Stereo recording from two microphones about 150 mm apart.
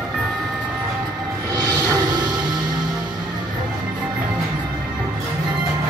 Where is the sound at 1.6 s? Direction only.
25° right (ahead or behind).